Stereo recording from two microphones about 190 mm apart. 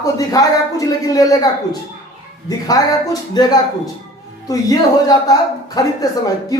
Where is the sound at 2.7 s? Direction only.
20° left (ahead or behind).